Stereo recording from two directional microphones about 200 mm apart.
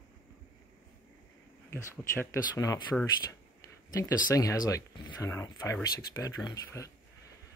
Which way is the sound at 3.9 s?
15° left (ahead or behind).